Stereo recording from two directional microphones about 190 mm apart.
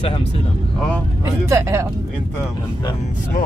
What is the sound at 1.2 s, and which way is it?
Speech, 15° right (ahead or behind).